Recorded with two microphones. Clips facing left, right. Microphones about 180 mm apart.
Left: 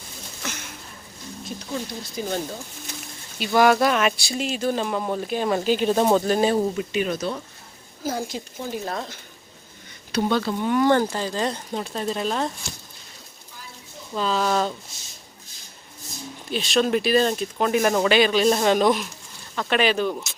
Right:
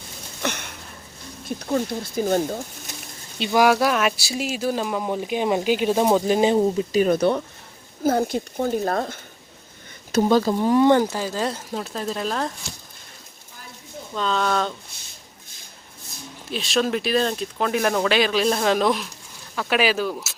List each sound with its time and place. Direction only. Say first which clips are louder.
0.4 s sniff: right 7 dB; 65° right (ahead or behind)
1.5 s speech: right 7 dB; 55° right (ahead or behind)
3.5 s speech: even; 10° right (ahead or behind)
6.9 s speech: right 9 dB; 40° right (ahead or behind)
7.2 s speech: right 8 dB; 60° right (ahead or behind); by 10.8 s 35° right (ahead or behind)
10.8 s speech: right 2 dB; 10° right (ahead or behind)
14.2 s speech: even; 5° left (ahead or behind)
16.5 s speech: left 1 dB; centre (ahead or behind)